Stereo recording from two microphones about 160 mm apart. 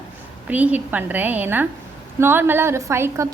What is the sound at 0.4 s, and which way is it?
A woman's voice, 10° right (ahead or behind).